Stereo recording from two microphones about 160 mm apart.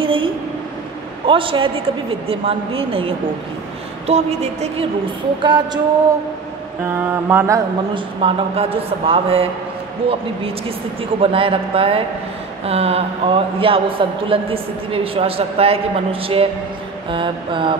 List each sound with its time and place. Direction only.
0.0 s a sound: 35° right (ahead or behind)
1.2 s a woman's voice: 30° right (ahead or behind)
5.4 s music: 30° right (ahead or behind)
6.9 s mantra: 15° right (ahead or behind)
7.9 s a woman's voice: 35° right (ahead or behind)
11.1 s a woman's voice: 35° right (ahead or behind)